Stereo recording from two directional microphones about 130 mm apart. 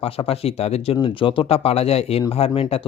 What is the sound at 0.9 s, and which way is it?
Speech, 40° left (ahead or behind).